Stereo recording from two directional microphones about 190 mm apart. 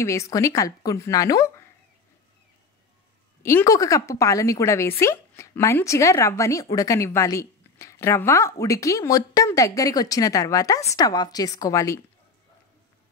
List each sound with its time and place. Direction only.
0.0 s a woman's voice: 15° left (ahead or behind)
3.4 s a woman's voice: 15° left (ahead or behind)